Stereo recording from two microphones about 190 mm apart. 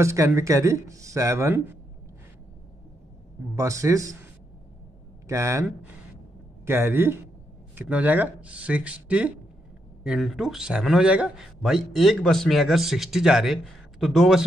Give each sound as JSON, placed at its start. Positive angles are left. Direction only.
{"t": 0.0, "sound": "speech", "side_deg": -15}
{"t": 3.5, "sound": "speech", "side_deg": -15}
{"t": 5.3, "sound": "a man's voice", "side_deg": -15}